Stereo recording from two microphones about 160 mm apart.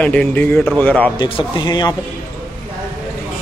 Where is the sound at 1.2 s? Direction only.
30° left (ahead or behind).